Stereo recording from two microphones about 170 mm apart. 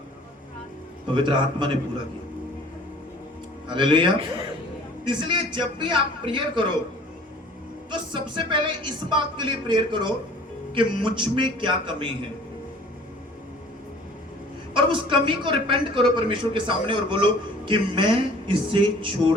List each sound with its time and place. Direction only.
1.1 s a man's voice: 30° right (ahead or behind)
3.7 s a man's voice: 30° right (ahead or behind)
7.9 s a man's voice: 25° right (ahead or behind)
14.7 s a man's voice: 30° right (ahead or behind)